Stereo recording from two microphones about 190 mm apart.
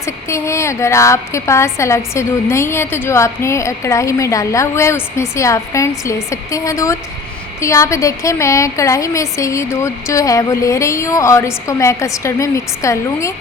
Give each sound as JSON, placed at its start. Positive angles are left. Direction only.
{"t": 0.0, "sound": "a woman's voice", "side_deg": 15}